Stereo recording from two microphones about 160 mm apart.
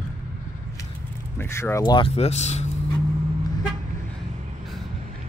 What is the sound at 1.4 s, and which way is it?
Speech, 15° left (ahead or behind).